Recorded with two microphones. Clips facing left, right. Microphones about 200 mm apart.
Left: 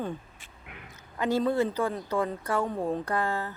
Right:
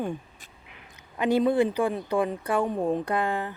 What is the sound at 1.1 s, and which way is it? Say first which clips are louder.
A woman's voice: right 4 dB; 15° right (ahead or behind).